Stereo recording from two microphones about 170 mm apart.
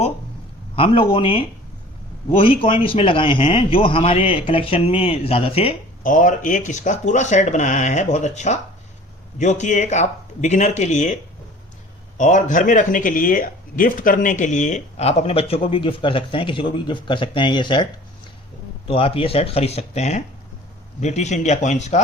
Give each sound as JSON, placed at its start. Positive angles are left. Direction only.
{"t": 1.1, "sound": "speech", "side_deg": 30}
{"t": 6.0, "sound": "speech", "side_deg": 50}
{"t": 18.9, "sound": "speech", "side_deg": 35}